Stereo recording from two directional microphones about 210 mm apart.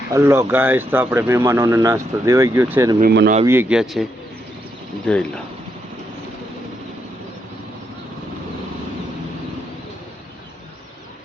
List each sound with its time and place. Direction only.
0.1 s speech: 10° right (ahead or behind)
3.0 s speech: 45° right (ahead or behind)
3.4 s speech: 10° right (ahead or behind)
5.0 s speech: 5° left (ahead or behind)